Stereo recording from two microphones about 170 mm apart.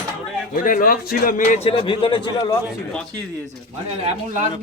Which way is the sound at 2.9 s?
5° left (ahead or behind).